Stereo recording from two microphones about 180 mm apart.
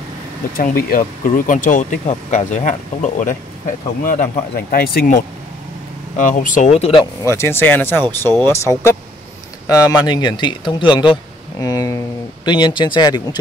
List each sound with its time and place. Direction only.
0.6 s speech: 55° left (ahead or behind); by 7.1 s 30° left (ahead or behind)
7.2 s speech: 15° left (ahead or behind)